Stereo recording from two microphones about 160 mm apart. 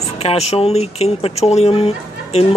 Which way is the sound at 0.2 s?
40° left (ahead or behind).